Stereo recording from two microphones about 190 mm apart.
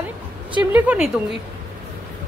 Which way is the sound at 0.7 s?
5° right (ahead or behind).